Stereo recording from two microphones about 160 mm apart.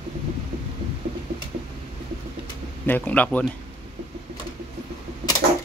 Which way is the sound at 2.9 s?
10° left (ahead or behind).